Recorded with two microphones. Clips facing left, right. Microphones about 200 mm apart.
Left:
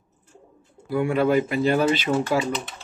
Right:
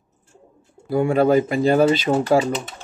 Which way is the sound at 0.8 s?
40° right (ahead or behind).